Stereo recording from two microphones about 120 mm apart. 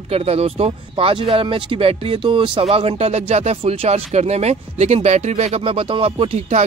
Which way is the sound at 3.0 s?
60° right (ahead or behind).